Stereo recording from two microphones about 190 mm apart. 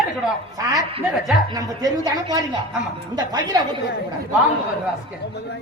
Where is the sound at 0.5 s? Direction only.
20° right (ahead or behind).